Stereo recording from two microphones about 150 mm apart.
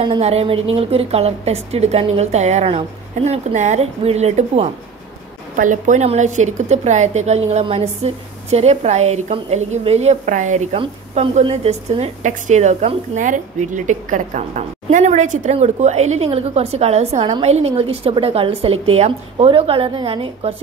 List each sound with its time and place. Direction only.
0.0 s a woman's voice: 40° right (ahead or behind)
5.6 s a woman's voice: 55° right (ahead or behind); by 20.5 s 35° right (ahead or behind)